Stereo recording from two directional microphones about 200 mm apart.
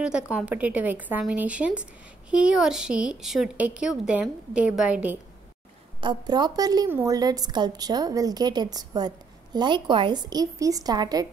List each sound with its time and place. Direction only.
0.0 s a woman's voice: 5° right (ahead or behind)
5.9 s a woman's voice: 20° right (ahead or behind)